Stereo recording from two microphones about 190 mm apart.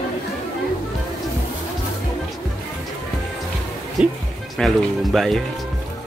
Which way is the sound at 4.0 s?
5° right (ahead or behind).